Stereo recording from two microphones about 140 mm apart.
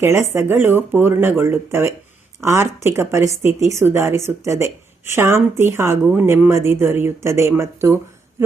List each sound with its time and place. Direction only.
0.0 s speech: 20° right (ahead or behind)